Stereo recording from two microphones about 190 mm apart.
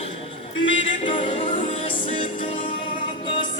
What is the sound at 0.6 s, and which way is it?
Music, 25° left (ahead or behind).